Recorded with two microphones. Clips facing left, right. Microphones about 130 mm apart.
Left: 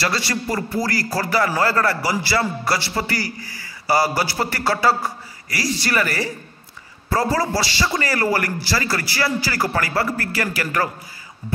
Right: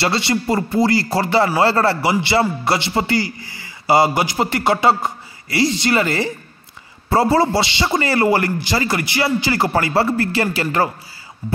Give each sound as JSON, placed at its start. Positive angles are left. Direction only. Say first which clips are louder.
{"t": 0.0, "sound": "a man's voice", "louder": "right 4 dB", "side_deg": -25}